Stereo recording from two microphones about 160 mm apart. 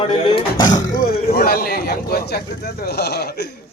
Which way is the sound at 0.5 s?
50° left (ahead or behind).